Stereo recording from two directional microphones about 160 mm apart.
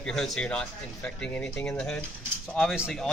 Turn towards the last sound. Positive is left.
turn(degrees=0)  # may be behind; listen again after turning